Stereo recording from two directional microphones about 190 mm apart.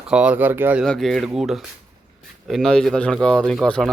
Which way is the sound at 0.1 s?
5° right (ahead or behind).